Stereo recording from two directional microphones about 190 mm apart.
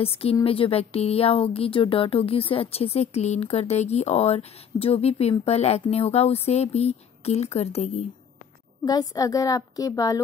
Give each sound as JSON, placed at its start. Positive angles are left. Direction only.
{"t": 0.0, "sound": "speech", "side_deg": 30}
{"t": 8.8, "sound": "a woman's voice", "side_deg": 20}